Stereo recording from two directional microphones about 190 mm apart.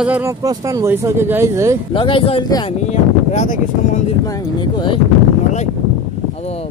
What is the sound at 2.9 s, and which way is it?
Speech, 35° left (ahead or behind).